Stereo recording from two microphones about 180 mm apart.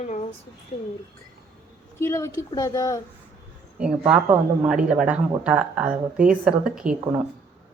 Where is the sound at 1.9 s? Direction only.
15° left (ahead or behind).